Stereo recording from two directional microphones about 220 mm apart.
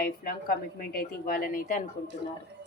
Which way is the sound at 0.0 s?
40° left (ahead or behind).